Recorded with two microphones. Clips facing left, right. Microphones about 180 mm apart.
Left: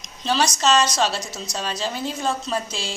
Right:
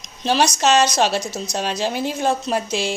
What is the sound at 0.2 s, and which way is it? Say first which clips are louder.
A woman's voice: right 3 dB; 60° right (ahead or behind).